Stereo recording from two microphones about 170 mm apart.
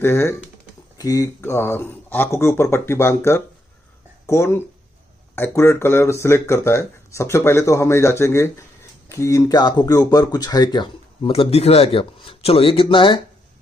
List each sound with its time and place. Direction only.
0.0 s speech: 15° left (ahead or behind); by 13.2 s 30° left (ahead or behind)